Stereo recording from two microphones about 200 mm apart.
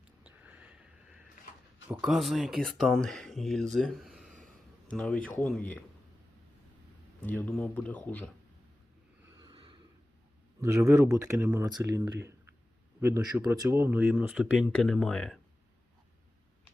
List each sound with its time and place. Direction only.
0.2 s a sound: 5° right (ahead or behind)
1.9 s speech: 5° right (ahead or behind)
7.2 s speech: 10° left (ahead or behind)
9.4 s snort: 25° right (ahead or behind)
10.6 s speech: 15° right (ahead or behind); by 15.4 s 5° left (ahead or behind)